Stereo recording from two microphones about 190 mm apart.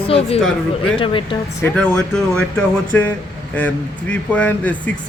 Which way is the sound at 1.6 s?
5° left (ahead or behind).